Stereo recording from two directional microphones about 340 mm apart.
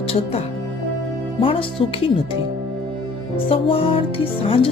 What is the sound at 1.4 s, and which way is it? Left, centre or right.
Speech, centre.